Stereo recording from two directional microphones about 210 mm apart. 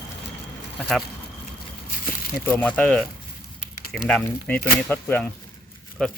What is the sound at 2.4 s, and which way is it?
Speech, 10° left (ahead or behind).